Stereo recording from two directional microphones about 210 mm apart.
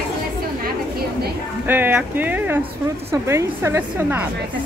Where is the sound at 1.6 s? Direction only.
10° right (ahead or behind).